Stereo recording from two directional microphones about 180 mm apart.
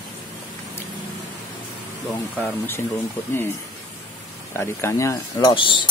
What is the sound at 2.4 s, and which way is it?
Speech, 10° left (ahead or behind).